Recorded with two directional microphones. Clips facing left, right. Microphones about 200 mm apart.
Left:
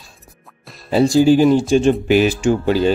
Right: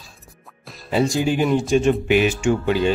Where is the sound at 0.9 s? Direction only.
35° left (ahead or behind).